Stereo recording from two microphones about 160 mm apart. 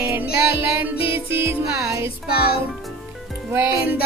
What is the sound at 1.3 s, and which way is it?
Music, 15° right (ahead or behind).